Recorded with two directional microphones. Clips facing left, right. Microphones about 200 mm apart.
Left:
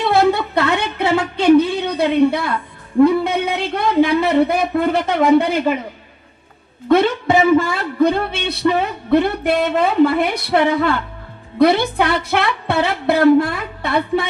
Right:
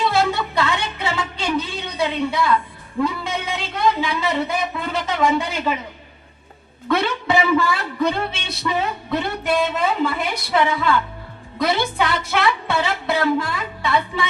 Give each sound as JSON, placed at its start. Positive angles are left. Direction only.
{"t": 0.0, "sound": "a sound", "side_deg": 60}
{"t": 3.0, "sound": "a man's voice", "side_deg": 60}
{"t": 6.8, "sound": "a man's voice", "side_deg": 50}